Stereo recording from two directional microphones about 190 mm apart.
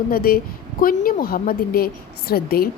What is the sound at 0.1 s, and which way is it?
A woman's voice, 50° left (ahead or behind).